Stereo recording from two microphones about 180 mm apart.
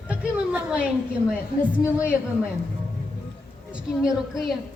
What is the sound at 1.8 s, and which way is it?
Speech, 15° left (ahead or behind).